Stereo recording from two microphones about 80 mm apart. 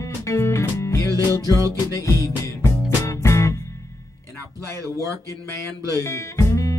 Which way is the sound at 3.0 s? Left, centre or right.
Left.